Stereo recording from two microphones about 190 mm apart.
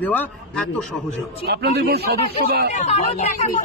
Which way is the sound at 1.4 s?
60° right (ahead or behind).